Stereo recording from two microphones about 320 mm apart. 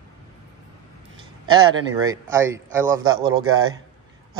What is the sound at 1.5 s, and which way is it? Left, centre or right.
Speech, centre.